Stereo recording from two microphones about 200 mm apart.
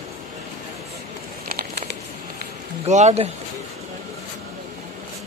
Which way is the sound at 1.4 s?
50° right (ahead or behind).